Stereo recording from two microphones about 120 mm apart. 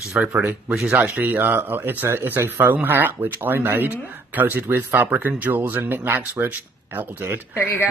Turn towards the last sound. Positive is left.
turn(degrees=20)  # may be behind; listen again after turning